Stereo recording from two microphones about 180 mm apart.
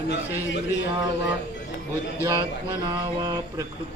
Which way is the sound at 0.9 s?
20° right (ahead or behind).